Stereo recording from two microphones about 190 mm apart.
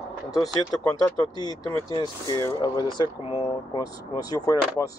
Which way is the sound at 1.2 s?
20° left (ahead or behind).